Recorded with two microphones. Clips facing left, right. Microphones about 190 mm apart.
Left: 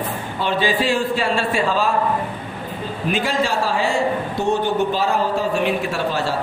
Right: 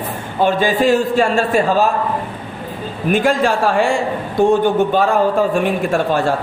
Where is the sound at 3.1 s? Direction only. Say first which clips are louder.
Right 6 dB; 50° right (ahead or behind).